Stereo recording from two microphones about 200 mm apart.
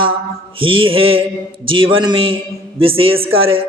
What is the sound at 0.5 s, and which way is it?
A man's voice, 25° right (ahead or behind).